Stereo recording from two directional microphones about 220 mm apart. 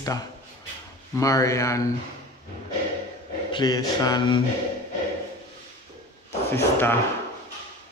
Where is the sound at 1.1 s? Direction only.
15° left (ahead or behind).